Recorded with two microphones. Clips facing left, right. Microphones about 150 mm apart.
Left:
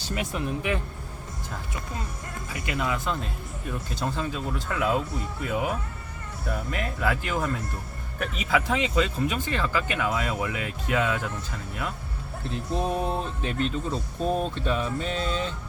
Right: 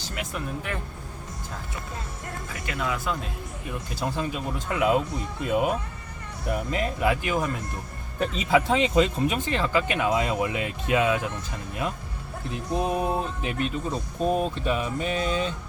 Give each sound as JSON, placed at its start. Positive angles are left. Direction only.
{"t": 2.7, "sound": "speech", "side_deg": 0}
{"t": 4.0, "sound": "speech", "side_deg": -15}
{"t": 8.2, "sound": "speech", "side_deg": -25}